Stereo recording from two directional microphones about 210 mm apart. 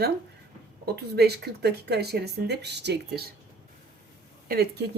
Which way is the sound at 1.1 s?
50° right (ahead or behind).